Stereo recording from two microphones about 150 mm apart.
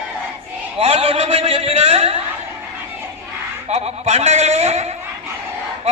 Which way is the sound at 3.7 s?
45° right (ahead or behind).